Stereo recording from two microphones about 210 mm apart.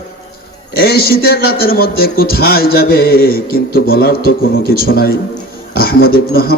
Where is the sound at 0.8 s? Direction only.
50° left (ahead or behind).